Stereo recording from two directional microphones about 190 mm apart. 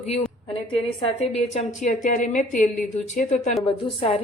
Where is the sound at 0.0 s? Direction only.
35° left (ahead or behind).